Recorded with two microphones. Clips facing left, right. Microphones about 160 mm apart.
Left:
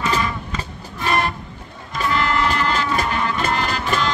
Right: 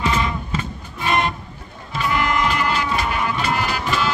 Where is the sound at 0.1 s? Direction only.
25° right (ahead or behind).